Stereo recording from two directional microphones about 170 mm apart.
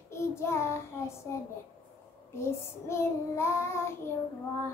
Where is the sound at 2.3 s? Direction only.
15° left (ahead or behind).